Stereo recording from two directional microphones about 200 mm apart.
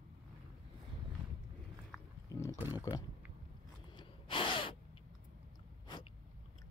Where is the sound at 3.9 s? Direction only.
25° left (ahead or behind).